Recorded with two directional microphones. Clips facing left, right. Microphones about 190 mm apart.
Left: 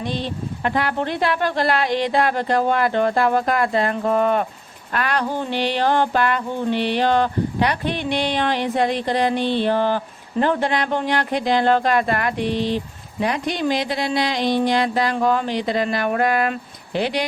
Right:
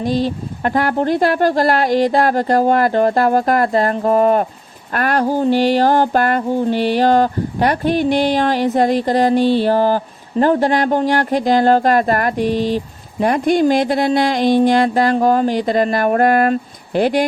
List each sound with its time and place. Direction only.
0.0 s speech: 45° right (ahead or behind)